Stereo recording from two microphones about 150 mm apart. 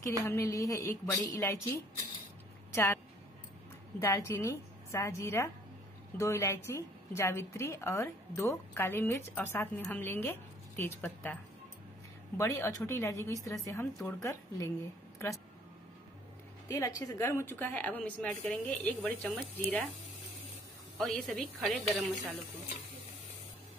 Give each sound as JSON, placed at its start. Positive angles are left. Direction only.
{"t": 0.0, "sound": "a woman's voice", "side_deg": 20}
{"t": 4.0, "sound": "a woman's voice", "side_deg": 20}
{"t": 12.4, "sound": "a woman's voice", "side_deg": 20}
{"t": 16.6, "sound": "a woman's voice", "side_deg": 20}
{"t": 21.0, "sound": "a woman's voice", "side_deg": 0}